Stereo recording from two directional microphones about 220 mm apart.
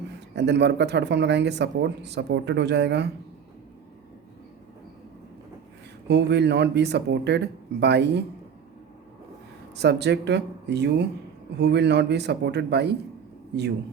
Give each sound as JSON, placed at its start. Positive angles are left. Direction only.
{"t": 0.3, "sound": "speech", "side_deg": -50}
{"t": 6.1, "sound": "speech", "side_deg": -50}
{"t": 9.7, "sound": "speech", "side_deg": -50}